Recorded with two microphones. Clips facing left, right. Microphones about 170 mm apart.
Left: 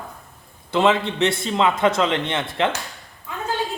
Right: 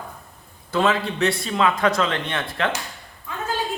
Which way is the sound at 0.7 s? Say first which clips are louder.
Left 2 dB; 25° left (ahead or behind).